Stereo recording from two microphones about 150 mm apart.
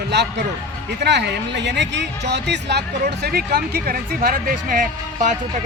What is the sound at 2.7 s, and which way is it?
Speech, 90° right.